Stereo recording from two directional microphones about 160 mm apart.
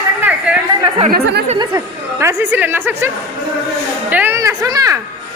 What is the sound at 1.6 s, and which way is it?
Speech, 20° right (ahead or behind).